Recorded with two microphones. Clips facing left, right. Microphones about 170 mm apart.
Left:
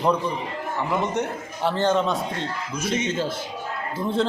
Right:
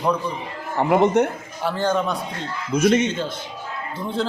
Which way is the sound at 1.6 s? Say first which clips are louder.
Left 1 dB; 25° left (ahead or behind).